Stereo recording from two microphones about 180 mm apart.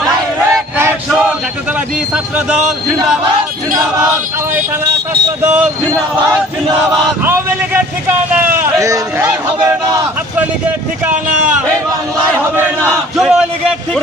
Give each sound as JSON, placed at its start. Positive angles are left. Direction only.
{"t": 0.8, "sound": "a sound", "side_deg": -10}
{"t": 2.1, "sound": "speech", "side_deg": -5}
{"t": 5.4, "sound": "speech", "side_deg": -15}
{"t": 7.3, "sound": "speech", "side_deg": -10}
{"t": 11.0, "sound": "speech", "side_deg": -10}